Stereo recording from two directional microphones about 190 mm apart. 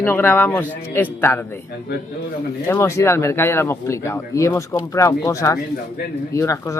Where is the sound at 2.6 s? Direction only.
15° left (ahead or behind).